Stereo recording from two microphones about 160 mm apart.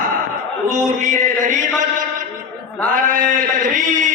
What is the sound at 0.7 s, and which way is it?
Music, 50° right (ahead or behind).